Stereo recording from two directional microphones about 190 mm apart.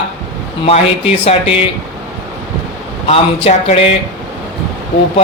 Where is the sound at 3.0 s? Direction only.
30° left (ahead or behind).